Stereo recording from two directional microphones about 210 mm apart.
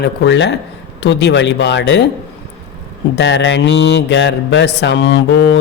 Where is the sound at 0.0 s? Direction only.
55° left (ahead or behind).